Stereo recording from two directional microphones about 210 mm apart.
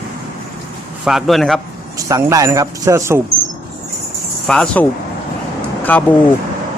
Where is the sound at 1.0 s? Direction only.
Centre (ahead or behind).